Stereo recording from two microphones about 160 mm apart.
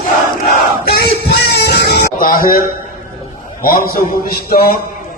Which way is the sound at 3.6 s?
65° left (ahead or behind).